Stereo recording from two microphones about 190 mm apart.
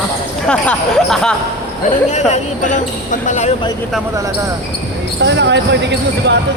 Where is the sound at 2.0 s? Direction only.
35° left (ahead or behind).